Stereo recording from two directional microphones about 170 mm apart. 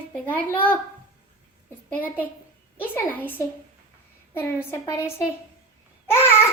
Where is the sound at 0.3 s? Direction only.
10° left (ahead or behind).